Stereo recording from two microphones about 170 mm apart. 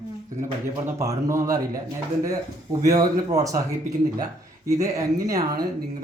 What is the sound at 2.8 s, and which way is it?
Speech, 20° right (ahead or behind).